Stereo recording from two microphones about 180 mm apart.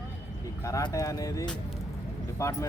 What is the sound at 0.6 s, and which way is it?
Speech, 15° left (ahead or behind).